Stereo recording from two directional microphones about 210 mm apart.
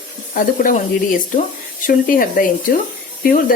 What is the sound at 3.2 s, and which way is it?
Speech, 40° left (ahead or behind).